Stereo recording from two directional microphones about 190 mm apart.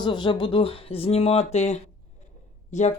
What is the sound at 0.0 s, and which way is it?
Speech, 25° left (ahead or behind).